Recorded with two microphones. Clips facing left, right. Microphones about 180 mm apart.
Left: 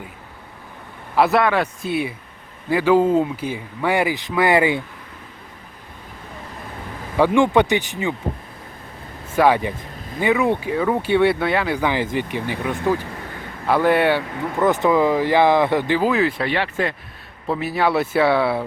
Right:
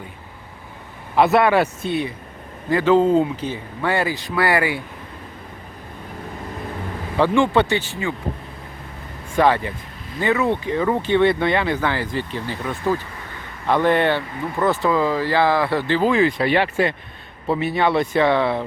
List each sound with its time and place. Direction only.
1.1 s speech: centre (ahead or behind)
1.9 s speech: 5° left (ahead or behind)
7.2 s speech: 15° left (ahead or behind)
9.3 s speech: 10° left (ahead or behind)
11.8 s speech: 15° left (ahead or behind)
16.5 s speech: 15° right (ahead or behind)
17.4 s speech: centre (ahead or behind)